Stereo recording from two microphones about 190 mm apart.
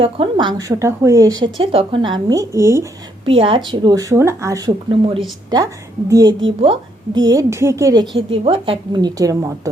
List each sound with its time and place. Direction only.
0.0 s a woman's voice: 25° right (ahead or behind)
3.2 s a woman's voice: 25° right (ahead or behind)
4.9 s a woman's voice: 30° right (ahead or behind)
6.1 s a woman's voice: 20° right (ahead or behind)
8.1 s a woman's voice: 30° right (ahead or behind)